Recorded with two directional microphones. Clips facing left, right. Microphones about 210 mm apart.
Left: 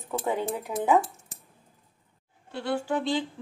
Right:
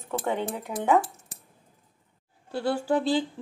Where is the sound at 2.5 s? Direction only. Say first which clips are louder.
Right 3 dB; 35° right (ahead or behind).